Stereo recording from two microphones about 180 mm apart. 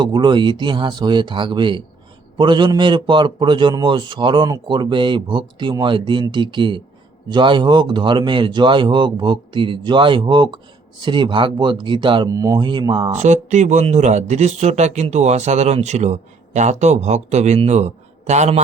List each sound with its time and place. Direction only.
0.0 s a man's voice: 25° right (ahead or behind)
13.1 s speech: 40° right (ahead or behind)